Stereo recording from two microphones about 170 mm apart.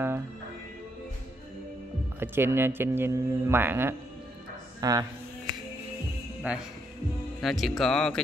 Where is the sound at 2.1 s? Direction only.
15° right (ahead or behind).